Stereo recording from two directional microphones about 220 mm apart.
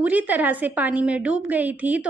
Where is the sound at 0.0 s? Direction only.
5° right (ahead or behind).